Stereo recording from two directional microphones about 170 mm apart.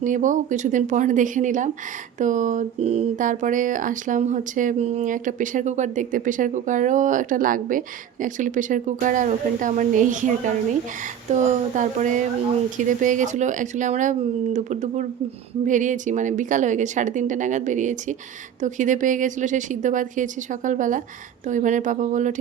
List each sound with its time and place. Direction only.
0.0 s speech: 50° right (ahead or behind)